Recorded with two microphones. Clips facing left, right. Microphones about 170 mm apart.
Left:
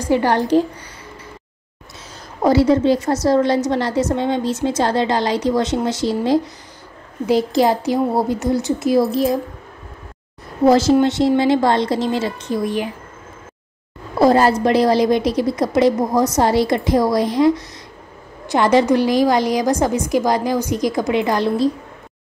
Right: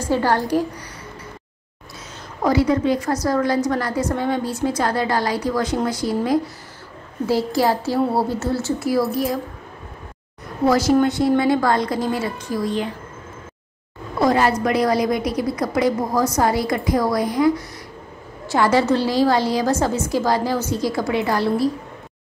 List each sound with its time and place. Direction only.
0.0 s a woman's voice: 15° left (ahead or behind)
2.4 s a woman's voice: 30° left (ahead or behind)
10.6 s a woman's voice: 25° left (ahead or behind)
14.2 s a woman's voice: 35° left (ahead or behind)